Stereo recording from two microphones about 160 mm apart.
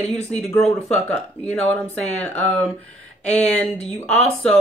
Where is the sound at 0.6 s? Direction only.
5° left (ahead or behind).